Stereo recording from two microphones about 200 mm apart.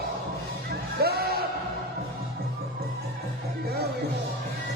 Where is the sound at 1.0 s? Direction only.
50° right (ahead or behind).